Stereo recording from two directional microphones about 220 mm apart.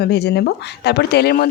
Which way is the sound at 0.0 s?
50° left (ahead or behind).